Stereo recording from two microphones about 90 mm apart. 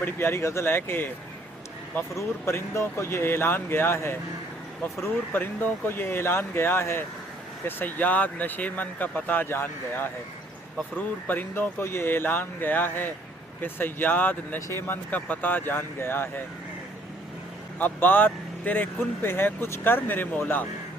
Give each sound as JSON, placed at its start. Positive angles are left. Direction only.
{"t": 0.0, "sound": "speech", "side_deg": 25}
{"t": 2.1, "sound": "speech", "side_deg": 30}
{"t": 17.7, "sound": "speech", "side_deg": 20}